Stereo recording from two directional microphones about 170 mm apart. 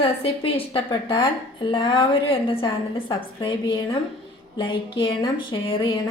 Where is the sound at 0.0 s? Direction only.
35° left (ahead or behind).